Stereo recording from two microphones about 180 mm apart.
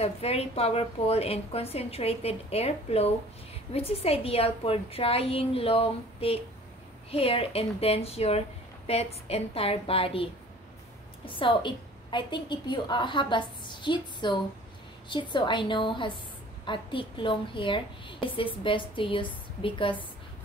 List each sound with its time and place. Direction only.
0.0 s a woman's voice: 35° left (ahead or behind)
11.2 s a woman's voice: 25° left (ahead or behind)